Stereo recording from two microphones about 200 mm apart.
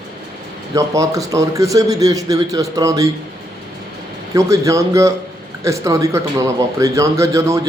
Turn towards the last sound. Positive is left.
turn(degrees=-15)  # may be behind; listen again after turning